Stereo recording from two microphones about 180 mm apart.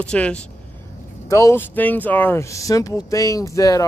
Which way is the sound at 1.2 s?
15° left (ahead or behind).